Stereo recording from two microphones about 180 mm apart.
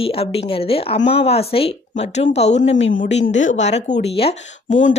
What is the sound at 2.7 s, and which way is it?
Speech, 90° left.